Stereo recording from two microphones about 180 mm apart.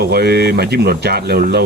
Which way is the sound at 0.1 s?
65° right (ahead or behind).